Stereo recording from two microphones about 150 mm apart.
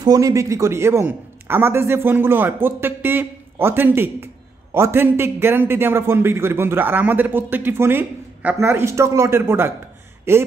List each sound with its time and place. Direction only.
0.0 s a man's voice: 25° right (ahead or behind)